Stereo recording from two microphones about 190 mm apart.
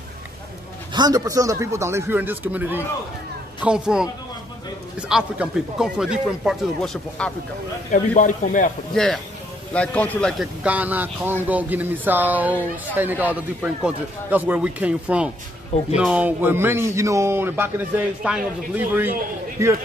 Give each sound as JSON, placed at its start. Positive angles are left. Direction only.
{"t": 0.9, "sound": "a man's voice", "side_deg": -20}
{"t": 7.9, "sound": "a man's voice", "side_deg": 45}
{"t": 8.9, "sound": "a man's voice", "side_deg": 5}